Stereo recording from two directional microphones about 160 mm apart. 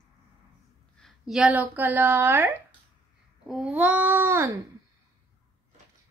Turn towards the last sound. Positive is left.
turn(degrees=-15)  # may be behind; listen again after turning